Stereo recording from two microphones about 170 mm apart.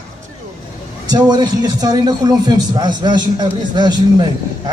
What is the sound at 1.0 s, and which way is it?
A man's voice, 25° right (ahead or behind).